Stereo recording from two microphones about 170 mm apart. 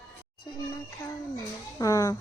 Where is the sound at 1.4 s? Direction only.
20° left (ahead or behind).